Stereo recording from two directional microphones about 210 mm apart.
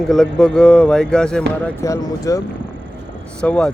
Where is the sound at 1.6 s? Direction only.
15° left (ahead or behind).